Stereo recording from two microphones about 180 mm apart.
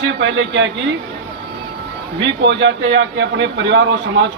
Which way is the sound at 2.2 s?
90° right.